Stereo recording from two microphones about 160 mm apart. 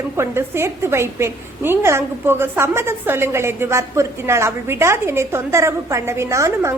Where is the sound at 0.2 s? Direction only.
15° right (ahead or behind).